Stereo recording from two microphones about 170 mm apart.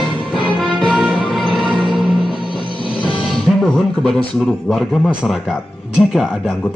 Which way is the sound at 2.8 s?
30° right (ahead or behind).